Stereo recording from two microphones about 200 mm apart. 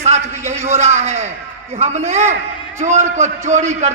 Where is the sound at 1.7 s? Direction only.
35° right (ahead or behind).